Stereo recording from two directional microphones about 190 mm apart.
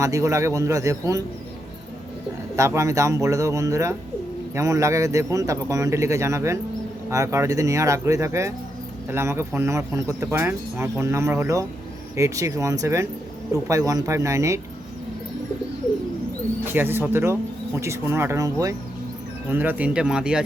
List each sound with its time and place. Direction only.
0.0 s speech: 15° right (ahead or behind)
2.6 s speech: 15° right (ahead or behind)
16.6 s speech: 10° right (ahead or behind)